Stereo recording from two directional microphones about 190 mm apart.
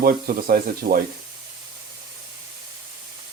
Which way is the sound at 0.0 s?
50° right (ahead or behind).